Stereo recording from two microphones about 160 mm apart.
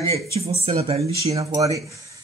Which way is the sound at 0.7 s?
35° right (ahead or behind).